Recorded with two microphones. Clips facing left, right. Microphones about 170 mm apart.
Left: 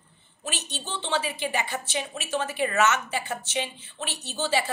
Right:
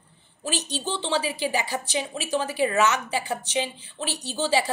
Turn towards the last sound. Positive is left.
turn(degrees=-35)  # may be behind; listen again after turning